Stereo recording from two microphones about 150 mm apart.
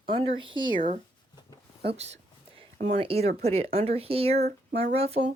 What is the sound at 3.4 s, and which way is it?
Speech, 45° right (ahead or behind).